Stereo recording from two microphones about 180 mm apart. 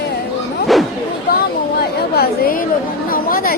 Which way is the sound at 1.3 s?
60° left (ahead or behind).